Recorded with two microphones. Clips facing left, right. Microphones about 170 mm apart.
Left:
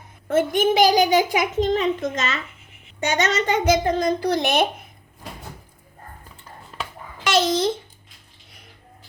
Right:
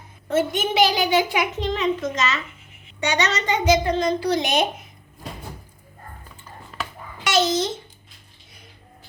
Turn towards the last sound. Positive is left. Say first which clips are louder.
# left 1 dB
turn(degrees=55)  # may be behind; listen again after turning